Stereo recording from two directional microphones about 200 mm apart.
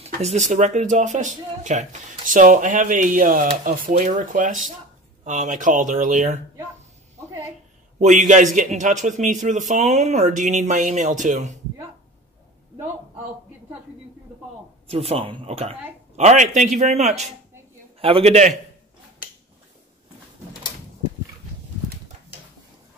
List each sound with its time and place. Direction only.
0.0 s speech: 35° right (ahead or behind)
8.0 s speech: 40° right (ahead or behind)
14.9 s speech: 30° right (ahead or behind)